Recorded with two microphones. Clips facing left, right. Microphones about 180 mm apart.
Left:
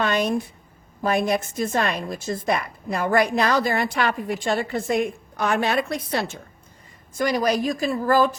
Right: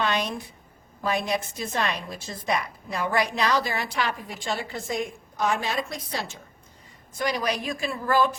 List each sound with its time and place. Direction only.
0.0 s a woman's voice: 50° left (ahead or behind)
7.1 s a woman's voice: 45° left (ahead or behind)